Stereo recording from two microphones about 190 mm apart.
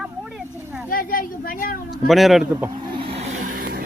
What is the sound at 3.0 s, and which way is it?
Vehicle, 30° right (ahead or behind).